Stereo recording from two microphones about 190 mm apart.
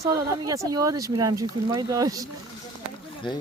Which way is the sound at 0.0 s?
15° right (ahead or behind).